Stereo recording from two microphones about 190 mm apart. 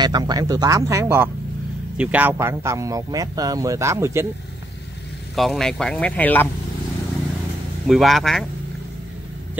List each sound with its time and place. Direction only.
0.0 s a man's voice: 20° right (ahead or behind)
5.3 s speech: centre (ahead or behind)
7.8 s speech: centre (ahead or behind)